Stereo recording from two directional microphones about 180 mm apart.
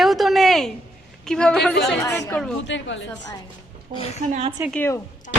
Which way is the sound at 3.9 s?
45° right (ahead or behind).